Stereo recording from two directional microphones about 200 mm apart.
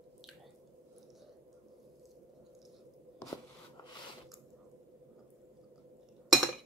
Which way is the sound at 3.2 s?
15° left (ahead or behind).